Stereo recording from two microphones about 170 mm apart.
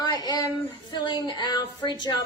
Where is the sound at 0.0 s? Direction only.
25° left (ahead or behind).